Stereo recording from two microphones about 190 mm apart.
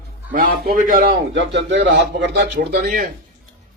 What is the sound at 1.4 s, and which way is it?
Speech, 70° right (ahead or behind).